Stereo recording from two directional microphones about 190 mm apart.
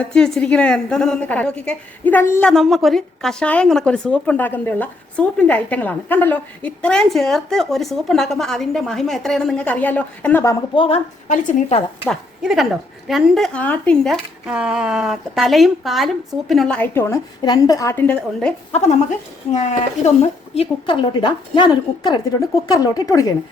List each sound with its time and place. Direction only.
0.0 s a woman's voice: 5° left (ahead or behind)
10.8 s a woman's voice: 30° left (ahead or behind)
11.3 s speech: 45° left (ahead or behind)
12.0 s a woman's voice: centre (ahead or behind)
18.7 s a woman's voice: 35° left (ahead or behind); by 23.3 s 20° left (ahead or behind)